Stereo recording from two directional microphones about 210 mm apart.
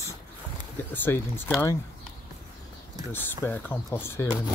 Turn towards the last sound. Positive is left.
turn(degrees=10)  # may be behind; listen again after turning